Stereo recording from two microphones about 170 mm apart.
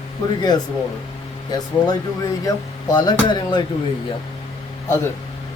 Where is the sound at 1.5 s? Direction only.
20° left (ahead or behind).